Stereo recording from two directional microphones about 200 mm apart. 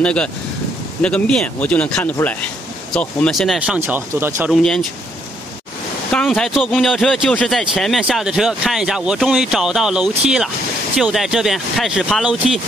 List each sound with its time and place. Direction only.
0.0 s speech: 5° left (ahead or behind)
4.5 s speech: 5° left (ahead or behind)
6.1 s speech: centre (ahead or behind)